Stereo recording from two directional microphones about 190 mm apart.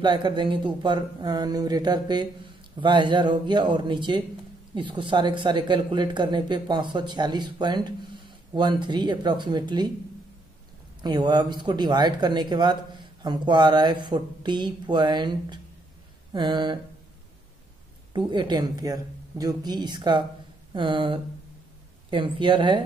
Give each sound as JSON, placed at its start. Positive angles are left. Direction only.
{"t": 0.0, "sound": "speech", "side_deg": -25}
{"t": 11.0, "sound": "speech", "side_deg": -20}
{"t": 18.1, "sound": "speech", "side_deg": -25}